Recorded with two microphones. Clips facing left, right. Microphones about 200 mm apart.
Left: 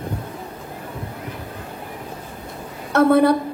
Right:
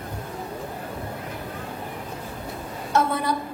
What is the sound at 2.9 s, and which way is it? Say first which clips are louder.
Speech: left 9 dB; 60° left (ahead or behind).